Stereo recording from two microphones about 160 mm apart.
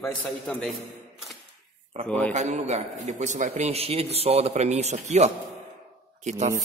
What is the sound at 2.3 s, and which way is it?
A man's voice, 45° right (ahead or behind).